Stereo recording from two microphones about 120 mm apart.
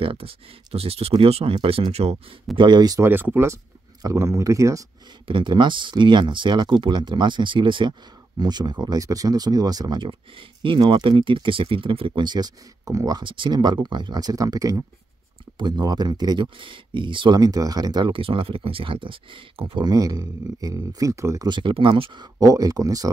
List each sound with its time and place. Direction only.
0.0 s speech: 50° right (ahead or behind)
2.5 s speech: 40° right (ahead or behind)
3.0 s speech: 20° right (ahead or behind)
5.2 s speech: 40° right (ahead or behind)
12.1 s speech: 35° right (ahead or behind)
13.2 s speech: 45° right (ahead or behind); by 21.5 s 25° right (ahead or behind)
21.5 s speech: 40° right (ahead or behind)